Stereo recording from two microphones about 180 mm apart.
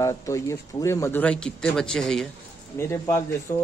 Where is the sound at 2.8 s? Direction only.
15° left (ahead or behind).